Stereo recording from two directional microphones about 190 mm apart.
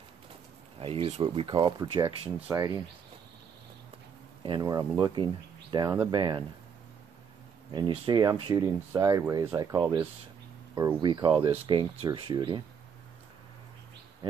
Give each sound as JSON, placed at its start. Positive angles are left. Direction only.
{"t": 0.7, "sound": "speech", "side_deg": -30}
{"t": 4.4, "sound": "speech", "side_deg": -20}
{"t": 7.7, "sound": "speech", "side_deg": -25}
{"t": 8.9, "sound": "speech", "side_deg": -15}